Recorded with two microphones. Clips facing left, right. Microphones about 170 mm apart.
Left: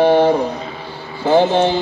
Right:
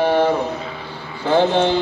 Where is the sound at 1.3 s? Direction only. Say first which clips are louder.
Left 2 dB; 5° left (ahead or behind).